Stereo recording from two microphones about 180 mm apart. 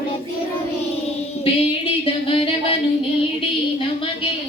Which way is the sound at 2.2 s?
30° left (ahead or behind).